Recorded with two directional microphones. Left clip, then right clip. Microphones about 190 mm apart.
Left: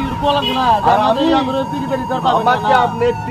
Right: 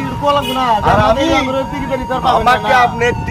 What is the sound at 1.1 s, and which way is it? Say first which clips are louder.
Speech: right 2 dB; 30° right (ahead or behind).